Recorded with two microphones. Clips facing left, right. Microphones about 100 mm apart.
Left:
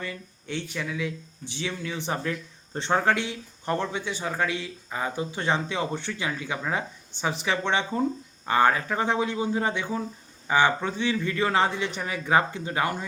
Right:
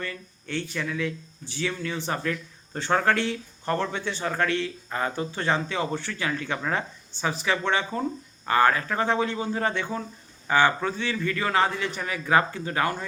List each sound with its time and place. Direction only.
0.0 s a man's voice: 15° left (ahead or behind)